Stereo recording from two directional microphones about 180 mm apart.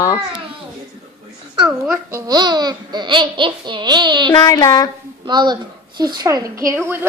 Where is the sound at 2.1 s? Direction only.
20° right (ahead or behind).